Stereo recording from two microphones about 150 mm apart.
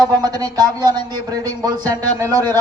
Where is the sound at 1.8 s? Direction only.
15° left (ahead or behind).